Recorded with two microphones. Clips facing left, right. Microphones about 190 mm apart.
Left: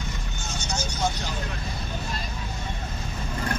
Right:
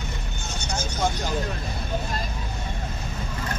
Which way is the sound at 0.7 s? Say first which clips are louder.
Right 2 dB; 55° right (ahead or behind).